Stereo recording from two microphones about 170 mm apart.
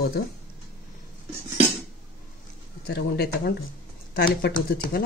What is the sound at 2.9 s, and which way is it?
Speech, 75° left (ahead or behind).